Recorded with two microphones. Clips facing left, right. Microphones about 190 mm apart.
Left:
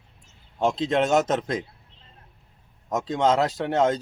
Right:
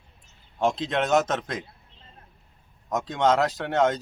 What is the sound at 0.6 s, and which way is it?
A man's voice, 25° left (ahead or behind).